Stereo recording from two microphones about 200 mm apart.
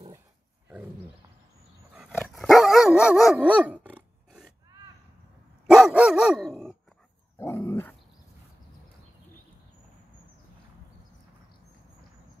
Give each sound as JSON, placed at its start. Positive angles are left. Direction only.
{"t": 2.1, "sound": "dog", "side_deg": 0}
{"t": 5.7, "sound": "dog", "side_deg": -5}
{"t": 7.3, "sound": "dog", "side_deg": 10}